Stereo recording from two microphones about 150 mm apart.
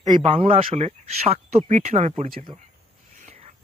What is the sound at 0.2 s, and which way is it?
Speech, 40° right (ahead or behind).